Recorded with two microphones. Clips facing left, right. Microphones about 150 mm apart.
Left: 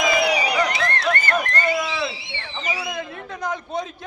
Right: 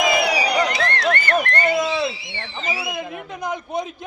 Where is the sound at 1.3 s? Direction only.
25° right (ahead or behind).